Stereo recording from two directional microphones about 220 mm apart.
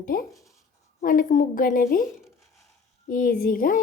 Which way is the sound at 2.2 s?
Centre (ahead or behind).